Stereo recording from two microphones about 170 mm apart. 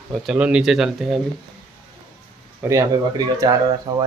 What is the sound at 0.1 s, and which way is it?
Speech, 5° right (ahead or behind).